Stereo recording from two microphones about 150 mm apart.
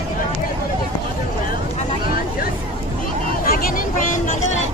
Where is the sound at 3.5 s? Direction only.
75° left (ahead or behind); by 4.6 s 55° left (ahead or behind).